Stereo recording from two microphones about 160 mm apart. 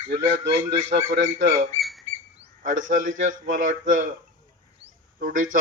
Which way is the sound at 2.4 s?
50° right (ahead or behind).